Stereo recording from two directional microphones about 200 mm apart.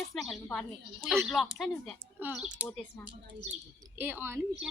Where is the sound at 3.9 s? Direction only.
10° right (ahead or behind).